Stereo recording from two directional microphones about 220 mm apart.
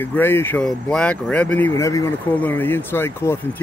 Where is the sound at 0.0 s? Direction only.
10° left (ahead or behind).